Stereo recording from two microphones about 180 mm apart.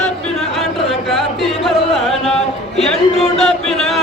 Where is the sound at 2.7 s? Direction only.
Centre (ahead or behind).